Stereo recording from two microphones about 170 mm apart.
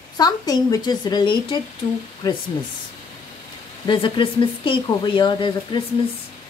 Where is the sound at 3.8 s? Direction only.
30° left (ahead or behind).